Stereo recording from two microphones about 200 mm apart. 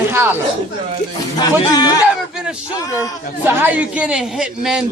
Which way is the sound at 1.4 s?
20° left (ahead or behind).